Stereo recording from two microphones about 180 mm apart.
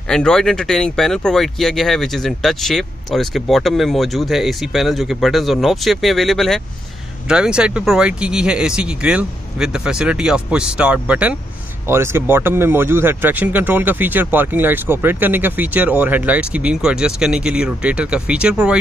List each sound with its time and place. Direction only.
0.1 s speech: 5° left (ahead or behind)